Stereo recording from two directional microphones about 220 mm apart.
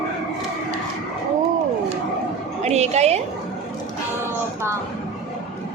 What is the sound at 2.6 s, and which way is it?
Speech, 30° right (ahead or behind).